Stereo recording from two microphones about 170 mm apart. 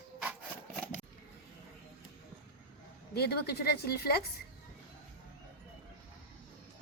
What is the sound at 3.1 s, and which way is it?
Speech, 70° left (ahead or behind).